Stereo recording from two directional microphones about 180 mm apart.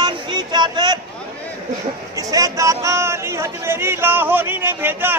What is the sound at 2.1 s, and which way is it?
Speech, 20° right (ahead or behind).